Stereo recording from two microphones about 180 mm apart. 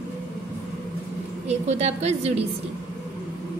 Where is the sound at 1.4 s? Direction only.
35° right (ahead or behind).